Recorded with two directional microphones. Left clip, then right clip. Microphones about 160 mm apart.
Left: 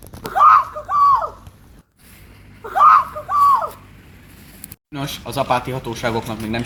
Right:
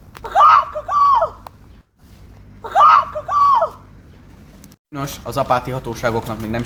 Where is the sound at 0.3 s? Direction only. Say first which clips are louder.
Right 1 dB; 35° right (ahead or behind).